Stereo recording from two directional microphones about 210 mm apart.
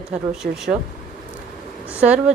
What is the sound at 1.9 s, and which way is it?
Speech, 5° right (ahead or behind).